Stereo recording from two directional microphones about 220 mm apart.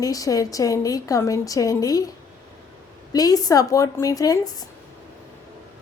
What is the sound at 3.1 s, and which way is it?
A woman's voice, 15° left (ahead or behind).